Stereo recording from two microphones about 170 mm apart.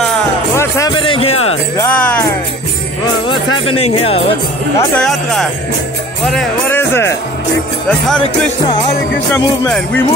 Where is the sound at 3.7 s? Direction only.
35° left (ahead or behind).